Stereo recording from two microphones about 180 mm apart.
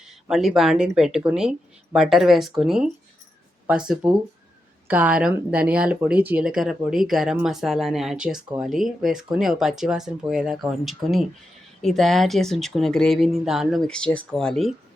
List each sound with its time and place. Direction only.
0.0 s speech: centre (ahead or behind)